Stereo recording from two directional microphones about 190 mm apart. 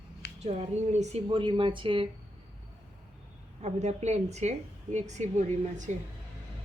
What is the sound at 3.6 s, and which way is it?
A woman's voice, 35° right (ahead or behind).